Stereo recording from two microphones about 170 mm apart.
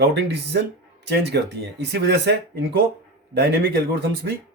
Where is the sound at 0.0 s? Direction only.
75° right (ahead or behind).